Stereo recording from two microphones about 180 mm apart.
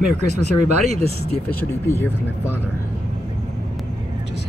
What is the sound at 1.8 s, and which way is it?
Speech, 15° left (ahead or behind).